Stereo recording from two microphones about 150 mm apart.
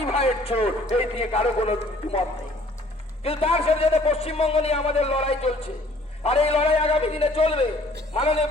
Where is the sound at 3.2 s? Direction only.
40° left (ahead or behind).